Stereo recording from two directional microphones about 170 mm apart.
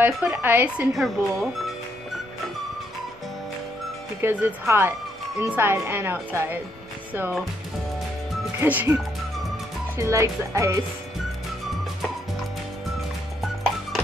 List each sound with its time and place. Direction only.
0.0 s speech: 10° right (ahead or behind)
4.2 s speech: 10° right (ahead or behind)
8.5 s speech: 10° right (ahead or behind)